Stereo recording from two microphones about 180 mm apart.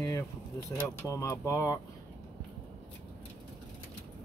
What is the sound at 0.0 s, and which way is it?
Speech, 15° left (ahead or behind).